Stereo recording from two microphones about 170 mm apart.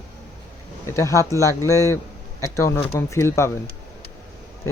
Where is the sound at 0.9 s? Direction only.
15° left (ahead or behind).